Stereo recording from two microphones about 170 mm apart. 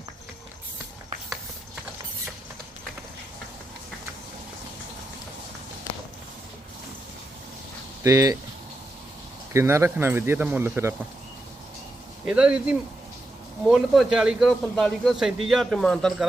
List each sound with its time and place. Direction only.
8.0 s speech: 20° right (ahead or behind)
9.5 s speech: 15° right (ahead or behind)
12.2 s a man's voice: 5° right (ahead or behind)